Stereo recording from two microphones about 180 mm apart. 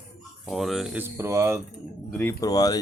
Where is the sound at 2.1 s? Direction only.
10° left (ahead or behind).